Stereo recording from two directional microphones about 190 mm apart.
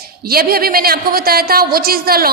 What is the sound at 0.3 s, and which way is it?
A woman's voice, 50° right (ahead or behind).